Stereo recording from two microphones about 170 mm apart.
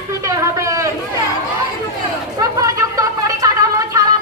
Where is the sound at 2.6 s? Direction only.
20° right (ahead or behind).